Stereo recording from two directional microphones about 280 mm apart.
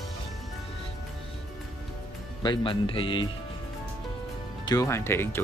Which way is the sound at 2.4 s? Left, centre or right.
Centre.